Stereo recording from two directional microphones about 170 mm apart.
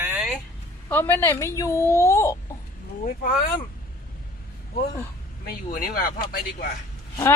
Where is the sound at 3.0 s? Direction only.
60° left (ahead or behind).